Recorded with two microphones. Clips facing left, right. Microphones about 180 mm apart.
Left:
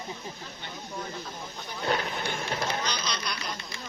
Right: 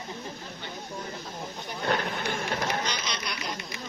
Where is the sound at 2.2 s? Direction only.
40° right (ahead or behind).